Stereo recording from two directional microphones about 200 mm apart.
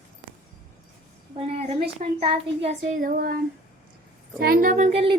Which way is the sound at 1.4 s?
30° right (ahead or behind).